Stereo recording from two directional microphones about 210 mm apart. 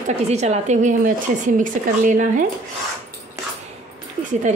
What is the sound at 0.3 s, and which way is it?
A woman's voice, 30° right (ahead or behind).